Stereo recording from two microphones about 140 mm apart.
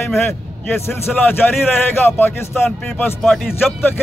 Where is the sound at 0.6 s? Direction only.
15° left (ahead or behind).